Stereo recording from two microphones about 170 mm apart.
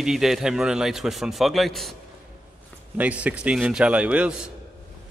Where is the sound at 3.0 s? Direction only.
10° right (ahead or behind).